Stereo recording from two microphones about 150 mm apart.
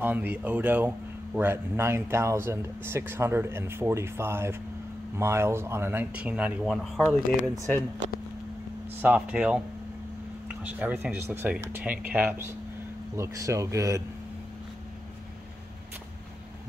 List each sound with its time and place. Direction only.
0.0 s a man's voice: 10° right (ahead or behind)
9.0 s a man's voice: 10° right (ahead or behind)